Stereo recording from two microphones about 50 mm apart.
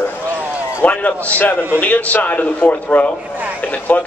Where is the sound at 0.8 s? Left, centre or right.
Left.